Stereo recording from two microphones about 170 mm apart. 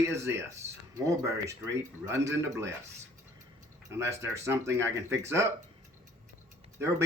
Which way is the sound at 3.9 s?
15° right (ahead or behind).